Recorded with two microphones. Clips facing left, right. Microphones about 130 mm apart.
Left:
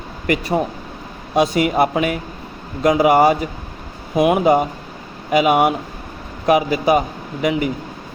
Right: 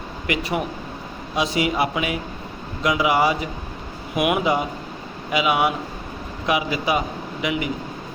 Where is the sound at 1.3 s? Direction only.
50° left (ahead or behind).